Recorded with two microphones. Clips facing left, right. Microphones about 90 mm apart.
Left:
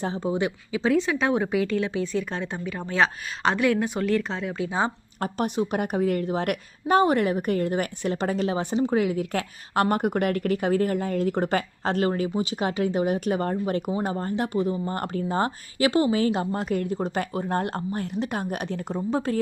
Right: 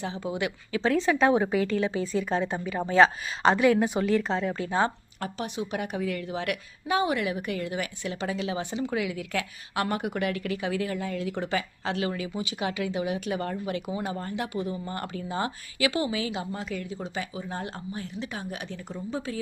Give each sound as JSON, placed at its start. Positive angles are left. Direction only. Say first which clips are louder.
{"t": 0.0, "sound": "speech", "louder": "left 5 dB", "side_deg": 35}
{"t": 0.7, "sound": "speech", "louder": "left 1 dB", "side_deg": 5}
{"t": 5.4, "sound": "a woman's voice", "louder": "left 7 dB", "side_deg": 45}